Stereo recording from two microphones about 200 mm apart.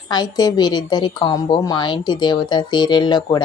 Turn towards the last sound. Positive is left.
turn(degrees=20)  # may be behind; listen again after turning